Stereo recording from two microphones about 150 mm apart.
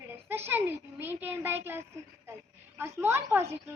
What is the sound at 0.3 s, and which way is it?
A child's voice, 15° right (ahead or behind).